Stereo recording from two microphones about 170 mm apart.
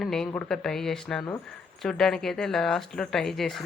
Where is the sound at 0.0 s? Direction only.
5° left (ahead or behind).